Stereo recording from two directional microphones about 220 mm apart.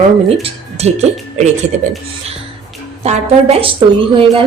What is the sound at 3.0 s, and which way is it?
Speech, 30° right (ahead or behind).